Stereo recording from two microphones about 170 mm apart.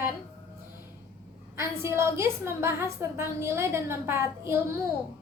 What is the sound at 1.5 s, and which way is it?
A woman's voice, 15° right (ahead or behind).